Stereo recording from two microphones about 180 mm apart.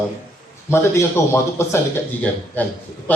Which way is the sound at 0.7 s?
15° left (ahead or behind).